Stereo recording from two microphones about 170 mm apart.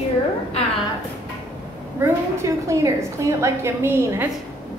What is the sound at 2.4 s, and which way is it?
A woman's voice, 20° right (ahead or behind).